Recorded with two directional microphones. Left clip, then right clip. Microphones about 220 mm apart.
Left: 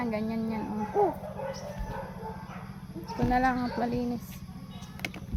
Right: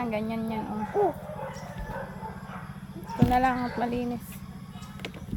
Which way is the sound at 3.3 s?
Centre (ahead or behind).